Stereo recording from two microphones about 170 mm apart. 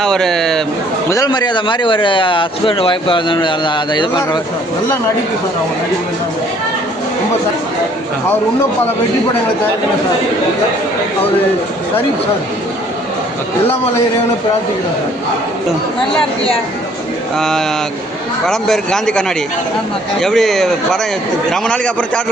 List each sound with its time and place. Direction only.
0.0 s speech: 5° left (ahead or behind)
1.1 s speech: 25° left (ahead or behind)
17.3 s a man's voice: 5° left (ahead or behind)